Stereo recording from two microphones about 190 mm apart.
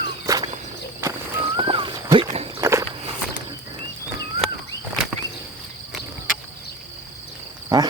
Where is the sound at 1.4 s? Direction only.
25° right (ahead or behind).